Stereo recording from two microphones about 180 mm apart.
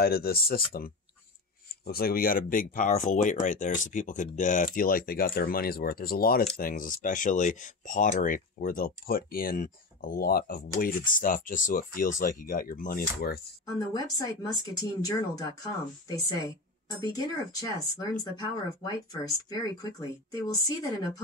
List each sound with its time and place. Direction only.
0.0 s speech: 55° left (ahead or behind)
13.7 s speech: 20° left (ahead or behind)
19.5 s speech: 20° left (ahead or behind)